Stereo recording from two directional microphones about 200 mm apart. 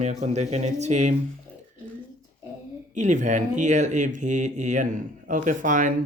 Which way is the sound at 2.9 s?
35° right (ahead or behind).